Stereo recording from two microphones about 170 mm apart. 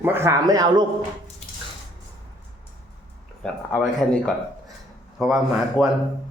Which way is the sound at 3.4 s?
5° left (ahead or behind).